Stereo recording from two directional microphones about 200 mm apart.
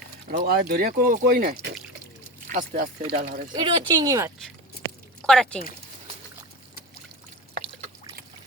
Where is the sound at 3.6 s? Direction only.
20° right (ahead or behind).